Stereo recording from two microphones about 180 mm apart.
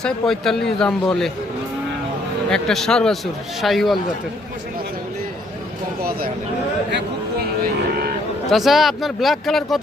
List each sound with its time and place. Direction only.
0.0 s speech: centre (ahead or behind)
2.5 s speech: centre (ahead or behind)
6.9 s speech: 60° right (ahead or behind)
8.4 s speech: centre (ahead or behind)